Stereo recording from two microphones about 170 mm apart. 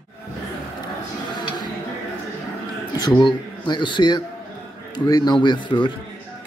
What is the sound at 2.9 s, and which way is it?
Speech, 25° left (ahead or behind).